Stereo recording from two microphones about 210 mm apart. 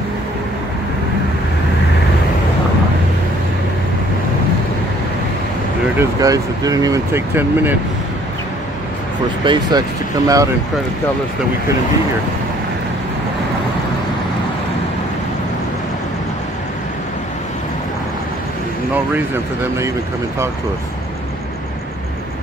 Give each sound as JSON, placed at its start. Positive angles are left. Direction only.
{"t": 5.9, "sound": "speech", "side_deg": -15}
{"t": 9.4, "sound": "speech", "side_deg": -20}